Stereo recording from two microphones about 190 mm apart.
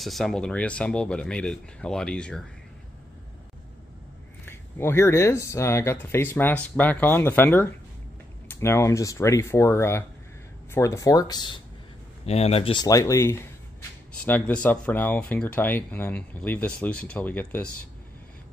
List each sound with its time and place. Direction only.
0.0 s speech: centre (ahead or behind)
4.5 s speech: 15° left (ahead or behind)
12.3 s speech: 35° left (ahead or behind); by 17.6 s 10° left (ahead or behind)